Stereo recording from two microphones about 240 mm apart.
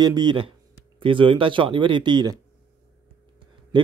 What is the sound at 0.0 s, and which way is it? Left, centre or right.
Speech, centre.